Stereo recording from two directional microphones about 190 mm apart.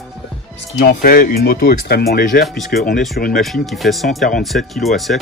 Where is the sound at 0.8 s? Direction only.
50° left (ahead or behind).